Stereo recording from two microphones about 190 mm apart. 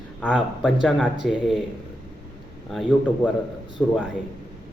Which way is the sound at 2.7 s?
Centre (ahead or behind).